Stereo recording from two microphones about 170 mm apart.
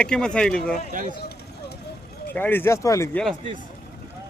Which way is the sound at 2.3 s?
10° left (ahead or behind).